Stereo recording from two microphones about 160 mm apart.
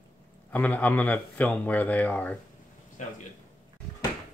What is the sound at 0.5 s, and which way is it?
Speech, 10° left (ahead or behind).